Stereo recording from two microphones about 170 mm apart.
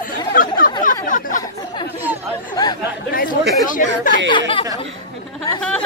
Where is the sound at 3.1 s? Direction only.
55° left (ahead or behind).